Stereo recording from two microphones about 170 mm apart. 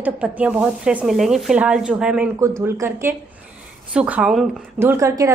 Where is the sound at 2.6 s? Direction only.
15° right (ahead or behind).